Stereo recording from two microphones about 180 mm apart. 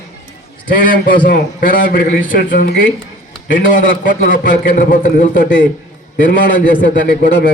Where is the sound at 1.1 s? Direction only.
55° left (ahead or behind).